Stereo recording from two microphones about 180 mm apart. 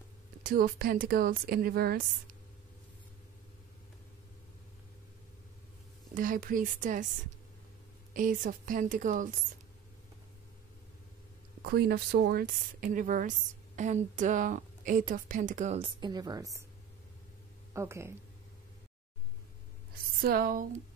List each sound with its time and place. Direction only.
0.4 s a woman's voice: 50° right (ahead or behind)
6.1 s a woman's voice: 50° right (ahead or behind)
8.1 s a woman's voice: 45° right (ahead or behind)
11.6 s a woman's voice: 60° right (ahead or behind); by 15.9 s 40° right (ahead or behind)
16.0 s speech: 20° right (ahead or behind)
17.7 s speech: 15° right (ahead or behind)
20.2 s a woman's voice: 55° right (ahead or behind)